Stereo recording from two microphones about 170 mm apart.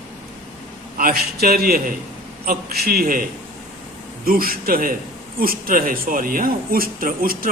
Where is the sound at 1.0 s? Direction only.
60° right (ahead or behind).